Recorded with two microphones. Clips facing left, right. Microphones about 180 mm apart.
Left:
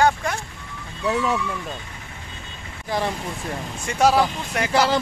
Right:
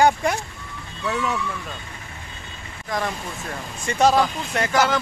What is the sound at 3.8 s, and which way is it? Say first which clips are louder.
Speech: even; 10° left (ahead or behind).